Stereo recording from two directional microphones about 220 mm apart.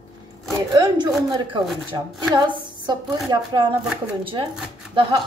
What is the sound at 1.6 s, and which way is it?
Speech, centre (ahead or behind).